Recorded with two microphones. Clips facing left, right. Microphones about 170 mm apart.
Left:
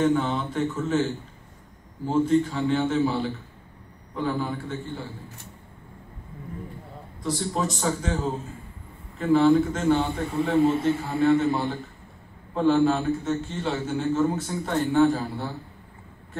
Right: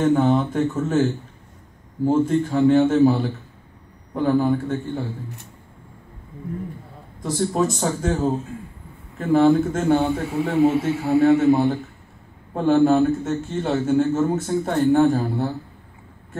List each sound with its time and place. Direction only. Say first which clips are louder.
0.0 s a man's voice: right 5 dB; 50° right (ahead or behind)
2.0 s a man's voice: right 3 dB; 50° right (ahead or behind)
7.2 s a man's voice: right 6 dB; 50° right (ahead or behind)
10.6 s a man's voice: right 4 dB; 5° right (ahead or behind)
11.1 s a man's voice: right 8 dB; 65° right (ahead or behind); by 15.5 s 50° right (ahead or behind)